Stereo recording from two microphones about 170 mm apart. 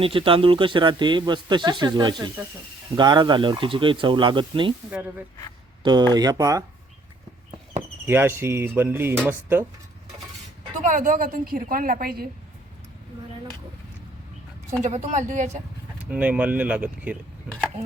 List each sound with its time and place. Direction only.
0.0 s speech: 30° right (ahead or behind)
4.9 s speech: 10° right (ahead or behind)
5.8 s speech: 25° right (ahead or behind)
8.0 s speech: 15° right (ahead or behind)
10.8 s a woman's voice: 50° right (ahead or behind)
14.8 s speech: 45° right (ahead or behind)
16.0 s speech: 10° right (ahead or behind)